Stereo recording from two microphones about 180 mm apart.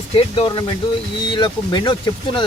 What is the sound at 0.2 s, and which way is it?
Speech, 30° left (ahead or behind).